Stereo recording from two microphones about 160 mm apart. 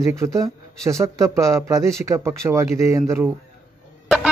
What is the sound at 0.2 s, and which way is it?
Speech, 20° right (ahead or behind).